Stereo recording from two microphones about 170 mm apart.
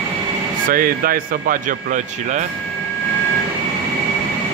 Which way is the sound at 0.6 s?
55° right (ahead or behind).